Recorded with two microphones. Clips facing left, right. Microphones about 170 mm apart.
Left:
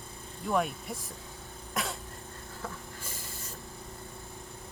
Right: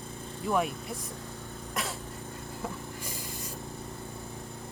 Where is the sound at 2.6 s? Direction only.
15° right (ahead or behind).